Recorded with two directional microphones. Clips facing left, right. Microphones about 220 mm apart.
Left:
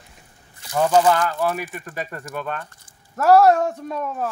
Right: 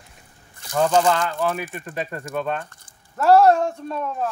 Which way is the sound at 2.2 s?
55° right (ahead or behind).